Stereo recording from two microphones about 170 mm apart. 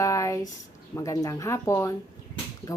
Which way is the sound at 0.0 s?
20° left (ahead or behind).